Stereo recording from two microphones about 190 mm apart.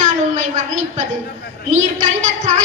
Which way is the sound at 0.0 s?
40° right (ahead or behind).